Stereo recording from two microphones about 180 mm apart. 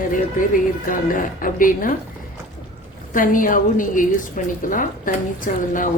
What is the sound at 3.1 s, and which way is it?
A woman's voice, 50° left (ahead or behind).